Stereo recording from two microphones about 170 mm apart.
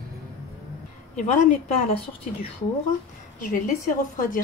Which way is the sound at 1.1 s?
45° left (ahead or behind).